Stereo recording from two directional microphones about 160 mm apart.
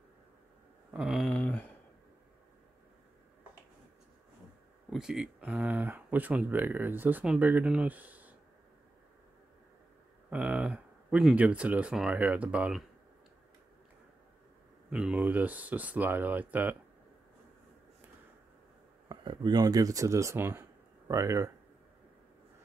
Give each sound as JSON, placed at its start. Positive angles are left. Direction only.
{"t": 0.9, "sound": "speech", "side_deg": 0}
{"t": 4.9, "sound": "speech", "side_deg": -5}
{"t": 10.3, "sound": "speech", "side_deg": -10}
{"t": 14.9, "sound": "speech", "side_deg": -5}
{"t": 19.0, "sound": "speech", "side_deg": -25}